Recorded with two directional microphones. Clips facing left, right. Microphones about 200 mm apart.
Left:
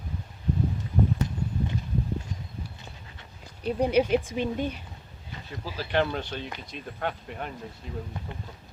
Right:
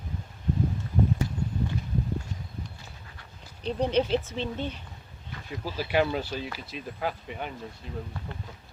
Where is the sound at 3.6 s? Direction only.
10° left (ahead or behind).